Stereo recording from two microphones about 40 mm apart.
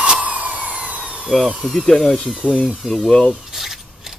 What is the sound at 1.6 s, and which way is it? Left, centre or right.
Speech, centre.